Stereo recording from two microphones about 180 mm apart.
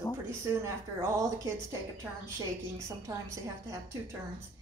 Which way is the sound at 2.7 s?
15° right (ahead or behind).